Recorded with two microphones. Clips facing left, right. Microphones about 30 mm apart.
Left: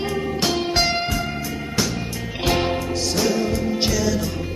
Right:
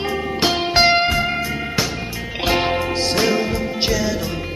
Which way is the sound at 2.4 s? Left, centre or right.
Right.